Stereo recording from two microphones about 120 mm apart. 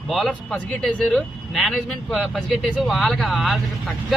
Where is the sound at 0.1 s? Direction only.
Centre (ahead or behind).